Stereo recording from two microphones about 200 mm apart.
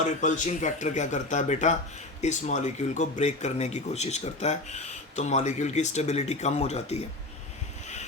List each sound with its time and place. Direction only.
0.0 s speech: 40° left (ahead or behind)